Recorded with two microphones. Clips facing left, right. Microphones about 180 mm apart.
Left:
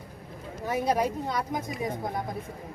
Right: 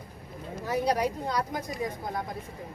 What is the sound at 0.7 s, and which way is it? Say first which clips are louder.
Speech: left 1 dB; 20° left (ahead or behind).